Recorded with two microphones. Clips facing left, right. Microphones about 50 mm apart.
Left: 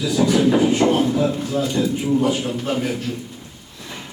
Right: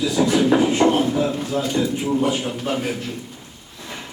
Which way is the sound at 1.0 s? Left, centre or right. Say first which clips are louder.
Left 1 dB; centre.